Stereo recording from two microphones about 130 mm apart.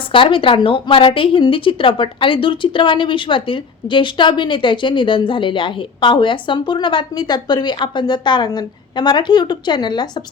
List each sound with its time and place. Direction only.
0.1 s a woman's voice: 40° left (ahead or behind)